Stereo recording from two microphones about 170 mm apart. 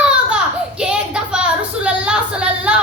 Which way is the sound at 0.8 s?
5° right (ahead or behind).